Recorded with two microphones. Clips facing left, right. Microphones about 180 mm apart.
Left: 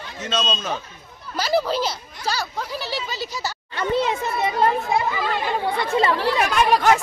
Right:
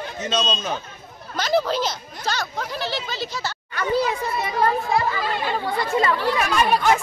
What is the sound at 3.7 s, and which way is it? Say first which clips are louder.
Speech: even; 25° left (ahead or behind).